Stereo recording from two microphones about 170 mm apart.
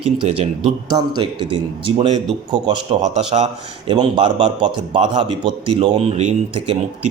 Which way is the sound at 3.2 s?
35° right (ahead or behind).